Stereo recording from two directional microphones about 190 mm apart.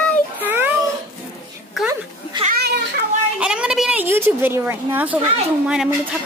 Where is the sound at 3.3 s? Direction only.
5° right (ahead or behind).